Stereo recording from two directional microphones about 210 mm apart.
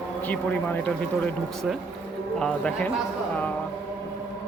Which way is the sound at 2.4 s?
5° left (ahead or behind).